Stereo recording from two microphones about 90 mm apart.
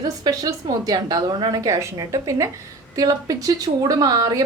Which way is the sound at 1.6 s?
35° right (ahead or behind).